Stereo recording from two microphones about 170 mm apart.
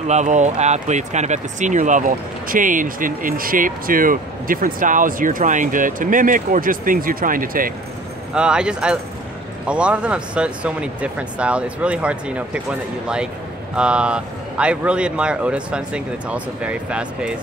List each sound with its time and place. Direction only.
0.0 s speech: 45° right (ahead or behind)
8.4 s speech: 5° right (ahead or behind)
13.7 s speech: 5° right (ahead or behind)